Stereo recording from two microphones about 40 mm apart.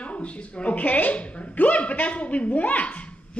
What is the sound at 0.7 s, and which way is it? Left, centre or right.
Speech, left.